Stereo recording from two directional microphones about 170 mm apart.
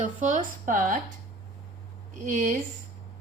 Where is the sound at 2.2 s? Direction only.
45° right (ahead or behind).